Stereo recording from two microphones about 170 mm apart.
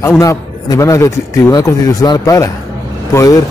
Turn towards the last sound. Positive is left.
turn(degrees=20)  # may be behind; listen again after turning